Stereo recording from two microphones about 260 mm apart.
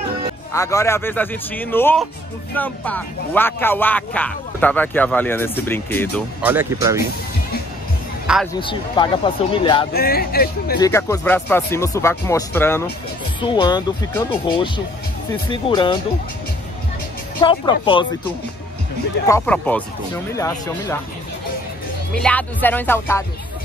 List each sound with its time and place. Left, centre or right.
0.5 s speech: centre
6.4 s speech: centre
8.5 s speech: centre
9.9 s speech: left
10.8 s speech: centre
15.5 s speech: centre
17.4 s speech: centre
19.2 s speech: centre
22.1 s speech: centre